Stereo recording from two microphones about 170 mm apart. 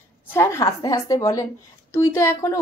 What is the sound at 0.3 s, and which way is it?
Speech, 15° left (ahead or behind).